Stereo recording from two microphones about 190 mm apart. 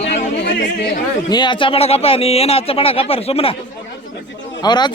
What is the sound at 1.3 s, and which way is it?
Speech, 25° left (ahead or behind).